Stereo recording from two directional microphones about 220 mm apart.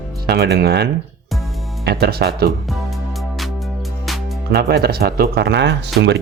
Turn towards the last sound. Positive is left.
turn(degrees=-55)  # may be behind; listen again after turning